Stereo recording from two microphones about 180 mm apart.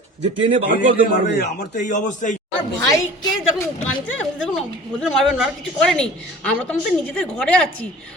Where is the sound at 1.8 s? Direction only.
45° left (ahead or behind).